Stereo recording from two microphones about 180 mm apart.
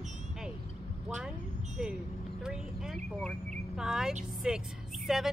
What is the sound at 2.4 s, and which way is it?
Speech, 5° right (ahead or behind).